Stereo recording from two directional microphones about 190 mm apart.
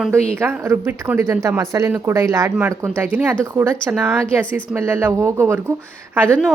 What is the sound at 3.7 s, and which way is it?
Speech, 5° left (ahead or behind).